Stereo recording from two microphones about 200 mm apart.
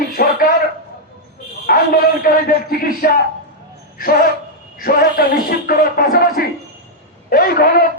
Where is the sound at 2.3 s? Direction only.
45° left (ahead or behind).